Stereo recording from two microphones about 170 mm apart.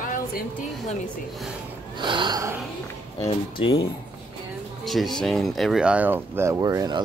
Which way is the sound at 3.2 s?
30° left (ahead or behind).